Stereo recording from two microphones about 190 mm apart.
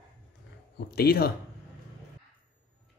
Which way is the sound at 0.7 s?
55° left (ahead or behind).